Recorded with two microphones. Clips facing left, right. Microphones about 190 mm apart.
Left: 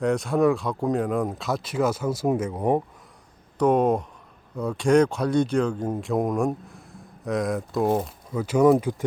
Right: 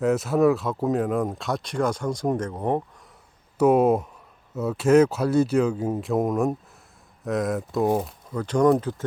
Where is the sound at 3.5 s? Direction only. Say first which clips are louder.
Right 2 dB; 5° right (ahead or behind); by 9.0 s 10° left (ahead or behind).